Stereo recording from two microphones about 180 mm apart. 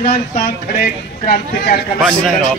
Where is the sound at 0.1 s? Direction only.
60° left (ahead or behind).